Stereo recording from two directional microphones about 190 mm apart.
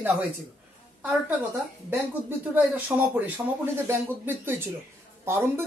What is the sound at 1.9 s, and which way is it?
Speech, 10° right (ahead or behind).